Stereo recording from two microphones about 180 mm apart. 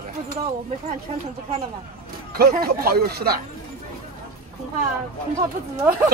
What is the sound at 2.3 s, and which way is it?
Speech, 55° right (ahead or behind).